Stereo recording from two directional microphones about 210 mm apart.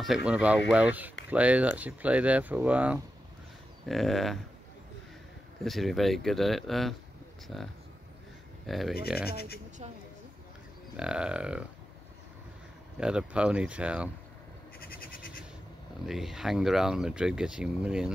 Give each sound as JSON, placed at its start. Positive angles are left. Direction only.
{"t": 0.0, "sound": "speech", "side_deg": -5}
{"t": 5.6, "sound": "speech", "side_deg": 0}
{"t": 9.2, "sound": "speech", "side_deg": 50}
{"t": 11.0, "sound": "speech", "side_deg": -5}
{"t": 13.0, "sound": "speech", "side_deg": -5}
{"t": 14.8, "sound": "goat", "side_deg": 45}
{"t": 16.1, "sound": "speech", "side_deg": 0}